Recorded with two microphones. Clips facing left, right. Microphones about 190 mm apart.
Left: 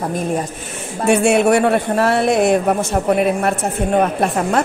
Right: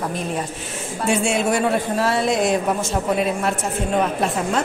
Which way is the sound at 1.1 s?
65° left (ahead or behind).